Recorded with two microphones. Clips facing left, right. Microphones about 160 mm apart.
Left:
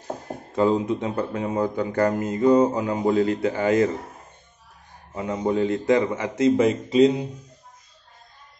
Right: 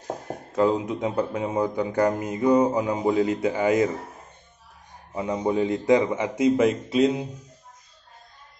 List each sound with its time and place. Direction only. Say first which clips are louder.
0.6 s speech: left 1 dB; 5° right (ahead or behind)
5.1 s speech: even; 15° right (ahead or behind)
6.5 s speech: left 2 dB; centre (ahead or behind)